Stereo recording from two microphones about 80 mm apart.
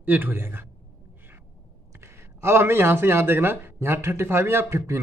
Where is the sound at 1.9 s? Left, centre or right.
Right.